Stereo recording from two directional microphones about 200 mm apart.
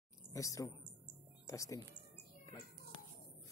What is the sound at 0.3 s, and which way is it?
A woman's voice, 15° left (ahead or behind).